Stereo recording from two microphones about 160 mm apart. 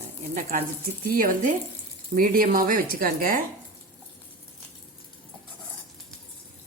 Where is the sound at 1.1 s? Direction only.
55° right (ahead or behind).